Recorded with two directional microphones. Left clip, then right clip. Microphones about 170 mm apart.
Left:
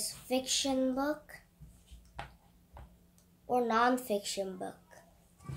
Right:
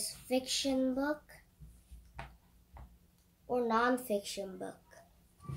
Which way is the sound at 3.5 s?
10° left (ahead or behind).